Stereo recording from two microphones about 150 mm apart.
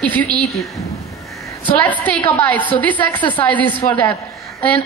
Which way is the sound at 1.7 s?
10° left (ahead or behind).